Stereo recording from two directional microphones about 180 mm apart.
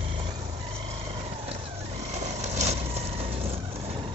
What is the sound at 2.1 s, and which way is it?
Vehicle, 40° right (ahead or behind).